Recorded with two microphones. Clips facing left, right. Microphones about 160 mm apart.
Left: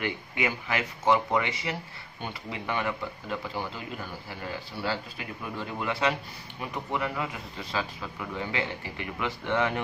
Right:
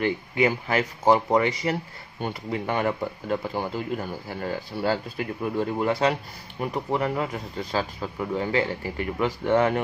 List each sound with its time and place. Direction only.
0.0 s a man's voice: 35° right (ahead or behind)